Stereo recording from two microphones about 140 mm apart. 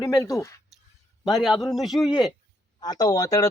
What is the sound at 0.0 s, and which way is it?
Speech, 20° left (ahead or behind).